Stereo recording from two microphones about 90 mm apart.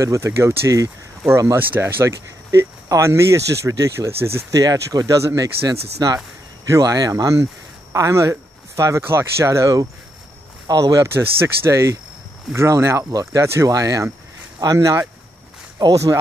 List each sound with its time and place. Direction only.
0.0 s speech: 35° right (ahead or behind)
4.6 s speech: 40° right (ahead or behind)